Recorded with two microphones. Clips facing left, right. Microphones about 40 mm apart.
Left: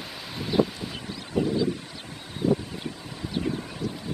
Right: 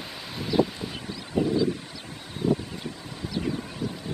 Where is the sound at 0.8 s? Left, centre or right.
Centre.